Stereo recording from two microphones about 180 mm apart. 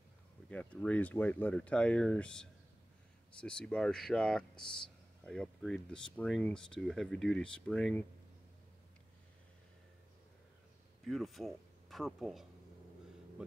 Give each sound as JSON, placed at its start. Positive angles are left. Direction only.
{"t": 0.5, "sound": "speech", "side_deg": 10}
{"t": 11.1, "sound": "speech", "side_deg": 0}